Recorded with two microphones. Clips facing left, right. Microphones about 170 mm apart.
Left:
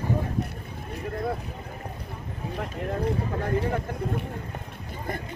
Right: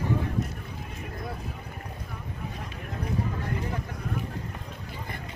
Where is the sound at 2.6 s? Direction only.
60° left (ahead or behind).